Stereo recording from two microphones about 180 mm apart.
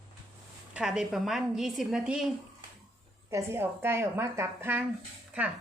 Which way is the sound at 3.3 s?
15° right (ahead or behind).